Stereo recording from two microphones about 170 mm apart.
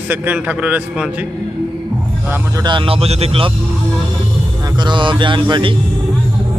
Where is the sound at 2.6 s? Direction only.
30° right (ahead or behind).